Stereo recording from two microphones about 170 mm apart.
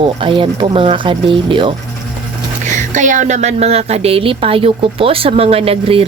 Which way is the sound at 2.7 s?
50° right (ahead or behind).